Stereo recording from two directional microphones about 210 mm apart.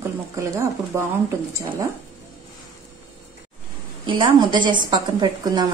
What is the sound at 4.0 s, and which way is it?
A woman's voice, 25° right (ahead or behind).